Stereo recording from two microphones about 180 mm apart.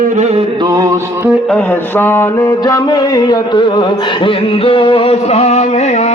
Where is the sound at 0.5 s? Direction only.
20° right (ahead or behind).